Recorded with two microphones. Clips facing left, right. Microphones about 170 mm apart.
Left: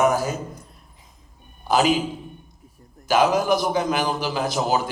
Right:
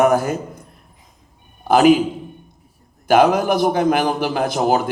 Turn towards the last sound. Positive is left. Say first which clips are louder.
# right 5 dB
turn(degrees=-55)  # may be behind; listen again after turning